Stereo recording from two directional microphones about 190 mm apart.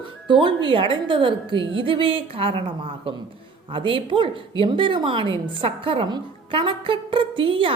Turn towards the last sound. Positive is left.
turn(degrees=-30)  # may be behind; listen again after turning